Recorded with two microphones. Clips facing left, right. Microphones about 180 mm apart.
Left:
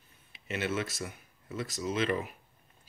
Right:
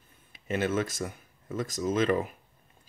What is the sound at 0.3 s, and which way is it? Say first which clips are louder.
Speech: right 5 dB; 45° right (ahead or behind).